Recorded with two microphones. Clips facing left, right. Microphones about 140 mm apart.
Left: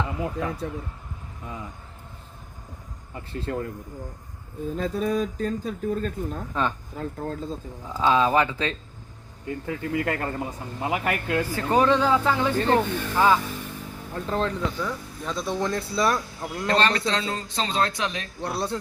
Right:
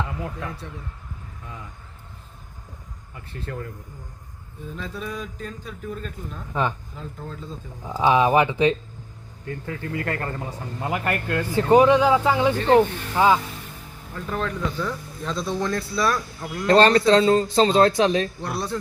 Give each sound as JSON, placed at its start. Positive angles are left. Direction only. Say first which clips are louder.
{"t": 3.2, "sound": "speech", "louder": "left 4 dB", "side_deg": 30}
{"t": 4.8, "sound": "speech", "louder": "left 8 dB", "side_deg": 45}
{"t": 6.5, "sound": "speech", "louder": "right 3 dB", "side_deg": -15}
{"t": 6.9, "sound": "speech", "louder": "left 5 dB", "side_deg": 50}
{"t": 7.9, "sound": "speech", "louder": "right 3 dB", "side_deg": -20}
{"t": 9.5, "sound": "speech", "louder": "left 2 dB", "side_deg": 20}
{"t": 11.5, "sound": "speech", "louder": "right 6 dB", "side_deg": -15}
{"t": 14.3, "sound": "speech", "louder": "left 2 dB", "side_deg": 30}
{"t": 14.8, "sound": "speech", "louder": "right 2 dB", "side_deg": 10}
{"t": 16.6, "sound": "a man's voice", "louder": "right 8 dB", "side_deg": -35}
{"t": 18.5, "sound": "speech", "louder": "left 1 dB", "side_deg": 25}